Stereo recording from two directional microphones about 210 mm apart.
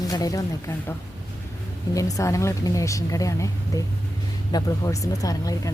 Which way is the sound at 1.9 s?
15° left (ahead or behind).